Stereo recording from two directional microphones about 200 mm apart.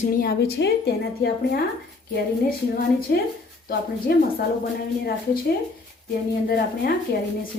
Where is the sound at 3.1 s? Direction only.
50° left (ahead or behind).